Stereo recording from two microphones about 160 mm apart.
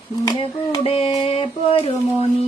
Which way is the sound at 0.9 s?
35° left (ahead or behind).